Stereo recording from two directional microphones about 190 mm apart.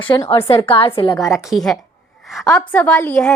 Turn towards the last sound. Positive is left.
turn(degrees=5)  # may be behind; listen again after turning